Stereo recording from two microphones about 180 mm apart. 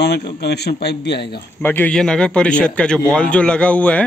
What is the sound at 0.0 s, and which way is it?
A man's voice, 65° left (ahead or behind).